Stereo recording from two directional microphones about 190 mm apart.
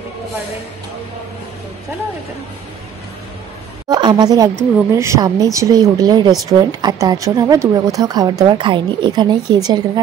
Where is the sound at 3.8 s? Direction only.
20° right (ahead or behind).